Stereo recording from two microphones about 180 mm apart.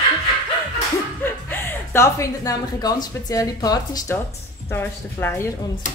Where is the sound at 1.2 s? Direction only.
10° left (ahead or behind).